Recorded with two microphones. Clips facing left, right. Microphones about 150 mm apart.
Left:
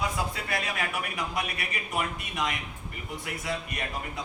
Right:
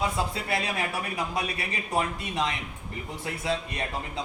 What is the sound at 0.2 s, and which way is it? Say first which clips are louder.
A man's voice: right 3 dB; 25° right (ahead or behind).